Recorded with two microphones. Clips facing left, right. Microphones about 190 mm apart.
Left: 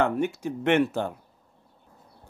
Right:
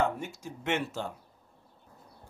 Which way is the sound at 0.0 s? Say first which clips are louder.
Left 6 dB; 65° left (ahead or behind).